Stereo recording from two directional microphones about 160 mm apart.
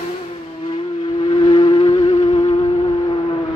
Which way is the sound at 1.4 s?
30° left (ahead or behind).